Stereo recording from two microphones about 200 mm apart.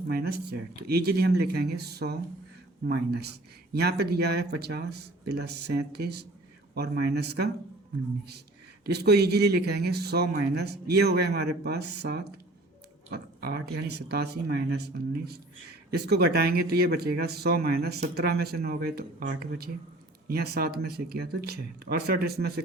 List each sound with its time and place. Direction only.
0.1 s speech: 50° right (ahead or behind)
8.8 s speech: 55° right (ahead or behind)